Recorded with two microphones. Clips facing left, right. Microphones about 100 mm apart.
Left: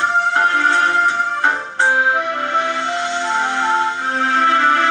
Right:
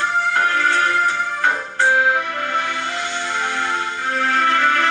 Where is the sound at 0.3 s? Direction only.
25° left (ahead or behind).